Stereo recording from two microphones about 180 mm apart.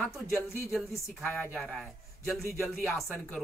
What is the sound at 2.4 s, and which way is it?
Speech, 15° left (ahead or behind).